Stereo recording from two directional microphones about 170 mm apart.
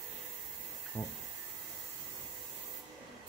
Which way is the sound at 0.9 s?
15° right (ahead or behind).